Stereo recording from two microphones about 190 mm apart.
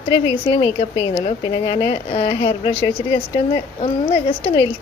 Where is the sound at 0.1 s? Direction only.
25° left (ahead or behind).